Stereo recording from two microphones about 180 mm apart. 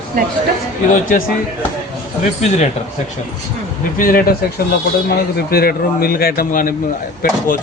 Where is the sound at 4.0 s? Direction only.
50° left (ahead or behind).